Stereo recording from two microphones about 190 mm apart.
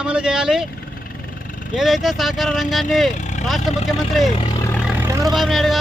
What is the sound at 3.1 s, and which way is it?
Vehicle, 40° left (ahead or behind).